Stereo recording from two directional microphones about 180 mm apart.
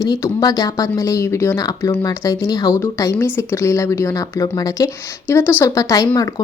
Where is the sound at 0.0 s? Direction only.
20° left (ahead or behind).